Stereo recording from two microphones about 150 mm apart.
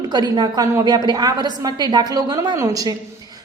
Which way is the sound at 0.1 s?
30° right (ahead or behind).